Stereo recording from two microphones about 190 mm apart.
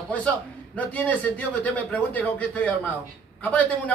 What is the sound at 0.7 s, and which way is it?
A man's voice, 10° left (ahead or behind).